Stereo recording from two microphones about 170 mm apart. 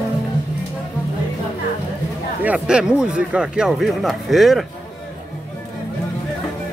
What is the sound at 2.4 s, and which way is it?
Speech, 5° right (ahead or behind).